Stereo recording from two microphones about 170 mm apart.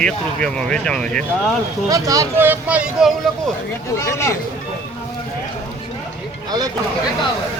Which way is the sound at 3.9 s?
15° left (ahead or behind).